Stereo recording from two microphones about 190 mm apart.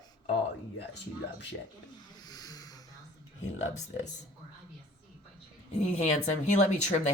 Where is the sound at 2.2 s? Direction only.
20° left (ahead or behind).